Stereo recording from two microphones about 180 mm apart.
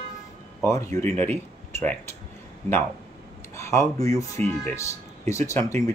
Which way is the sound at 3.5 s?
15° left (ahead or behind).